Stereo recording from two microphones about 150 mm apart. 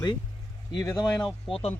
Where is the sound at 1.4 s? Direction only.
40° left (ahead or behind).